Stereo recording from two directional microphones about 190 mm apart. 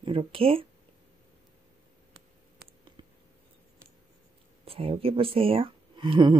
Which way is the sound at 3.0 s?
25° right (ahead or behind).